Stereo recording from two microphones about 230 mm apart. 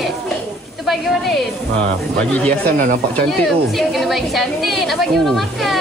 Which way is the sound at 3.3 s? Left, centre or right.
Centre.